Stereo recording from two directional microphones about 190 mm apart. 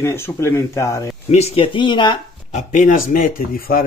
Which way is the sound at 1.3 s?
30° left (ahead or behind).